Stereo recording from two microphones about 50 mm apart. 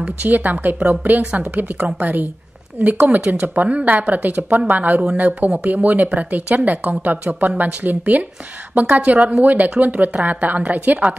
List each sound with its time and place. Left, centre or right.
0.2 s a woman's voice: right